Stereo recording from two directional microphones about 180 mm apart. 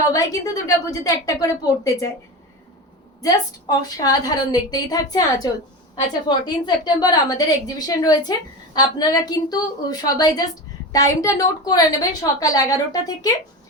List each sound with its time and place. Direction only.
0.1 s a woman's voice: 20° left (ahead or behind)
3.2 s a woman's voice: 20° left (ahead or behind)